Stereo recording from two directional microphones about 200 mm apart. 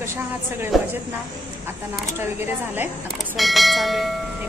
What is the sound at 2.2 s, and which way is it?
Speech, 10° right (ahead or behind).